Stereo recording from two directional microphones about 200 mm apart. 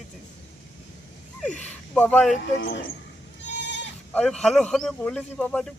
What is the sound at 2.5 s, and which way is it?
Speech, 55° left (ahead or behind).